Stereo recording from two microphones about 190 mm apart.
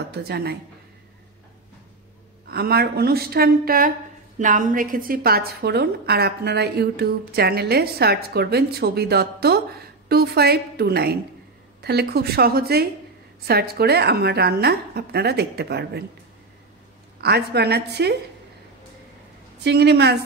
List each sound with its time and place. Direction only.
0.1 s a woman's voice: 60° right (ahead or behind)
2.5 s a woman's voice: 55° right (ahead or behind)
17.2 s a woman's voice: 60° right (ahead or behind)
19.6 s a woman's voice: 60° right (ahead or behind)